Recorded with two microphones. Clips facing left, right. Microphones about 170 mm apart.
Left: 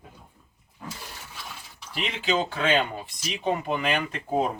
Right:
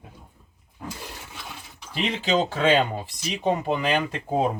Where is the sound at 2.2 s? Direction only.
35° right (ahead or behind).